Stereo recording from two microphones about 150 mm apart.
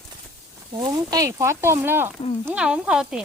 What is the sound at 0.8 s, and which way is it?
Speech, 25° right (ahead or behind).